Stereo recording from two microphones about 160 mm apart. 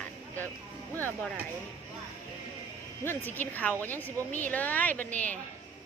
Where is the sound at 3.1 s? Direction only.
10° left (ahead or behind).